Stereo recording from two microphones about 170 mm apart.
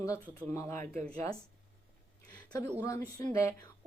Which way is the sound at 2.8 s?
20° left (ahead or behind).